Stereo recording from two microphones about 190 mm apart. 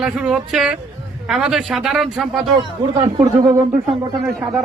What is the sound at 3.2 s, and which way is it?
Speech, 20° right (ahead or behind).